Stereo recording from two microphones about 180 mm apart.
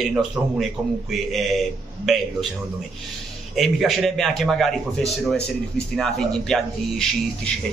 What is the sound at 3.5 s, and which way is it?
A man's voice, centre (ahead or behind).